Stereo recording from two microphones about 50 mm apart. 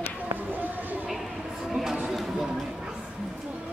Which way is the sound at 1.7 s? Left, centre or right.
Centre.